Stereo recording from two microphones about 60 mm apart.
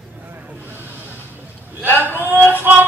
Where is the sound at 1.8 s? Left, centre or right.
Right.